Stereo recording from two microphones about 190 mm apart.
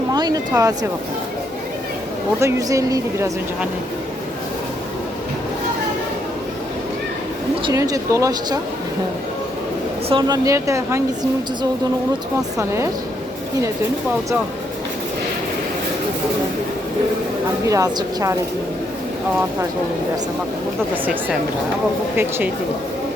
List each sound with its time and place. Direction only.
0.1 s speech: 20° right (ahead or behind)
2.4 s speech: 15° right (ahead or behind)
7.6 s speech: 20° right (ahead or behind)
10.1 s speech: 20° right (ahead or behind)
12.5 s speech: 15° right (ahead or behind)
17.7 s speech: 20° right (ahead or behind)
20.9 s speech: 10° right (ahead or behind)